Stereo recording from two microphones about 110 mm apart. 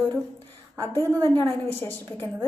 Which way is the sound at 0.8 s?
20° left (ahead or behind).